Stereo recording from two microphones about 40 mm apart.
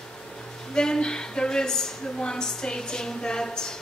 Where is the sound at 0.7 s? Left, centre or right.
Centre.